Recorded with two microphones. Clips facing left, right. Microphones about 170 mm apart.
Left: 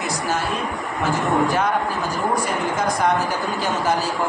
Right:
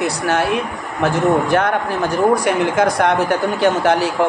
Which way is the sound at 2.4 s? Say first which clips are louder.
Right 7 dB; 70° right (ahead or behind).